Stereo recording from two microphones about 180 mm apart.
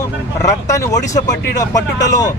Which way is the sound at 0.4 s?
15° left (ahead or behind).